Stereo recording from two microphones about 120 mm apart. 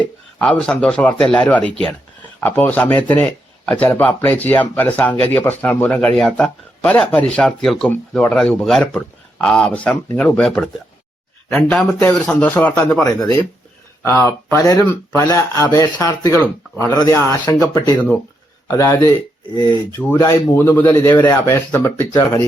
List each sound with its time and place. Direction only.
0.0 s a man's voice: 10° left (ahead or behind)
14.1 s a man's voice: 20° left (ahead or behind)